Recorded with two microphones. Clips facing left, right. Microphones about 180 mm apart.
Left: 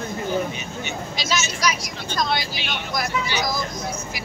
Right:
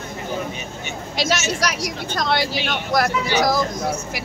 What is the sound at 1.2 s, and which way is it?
Speech, 75° right (ahead or behind).